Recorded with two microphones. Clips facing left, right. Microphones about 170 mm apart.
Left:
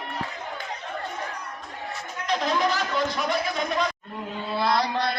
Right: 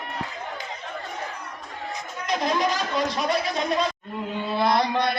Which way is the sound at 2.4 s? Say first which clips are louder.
Right 1 dB; 15° right (ahead or behind).